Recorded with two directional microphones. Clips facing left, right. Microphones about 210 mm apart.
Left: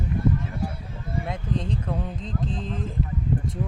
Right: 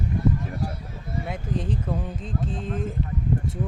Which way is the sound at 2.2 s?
45° right (ahead or behind).